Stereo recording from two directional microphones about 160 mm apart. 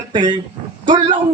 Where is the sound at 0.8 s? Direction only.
55° right (ahead or behind).